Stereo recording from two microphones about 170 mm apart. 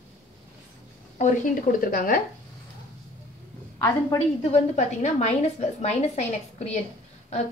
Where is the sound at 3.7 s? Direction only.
20° left (ahead or behind).